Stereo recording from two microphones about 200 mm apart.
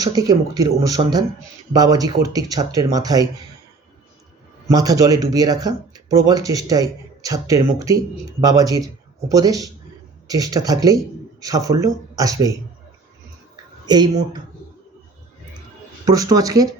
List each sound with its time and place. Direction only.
0.0 s speech: 20° right (ahead or behind)
4.7 s speech: 20° right (ahead or behind)
13.8 s speech: 20° right (ahead or behind)
16.0 s speech: 20° right (ahead or behind)